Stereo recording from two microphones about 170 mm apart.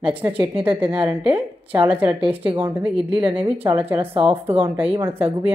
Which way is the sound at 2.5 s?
10° right (ahead or behind).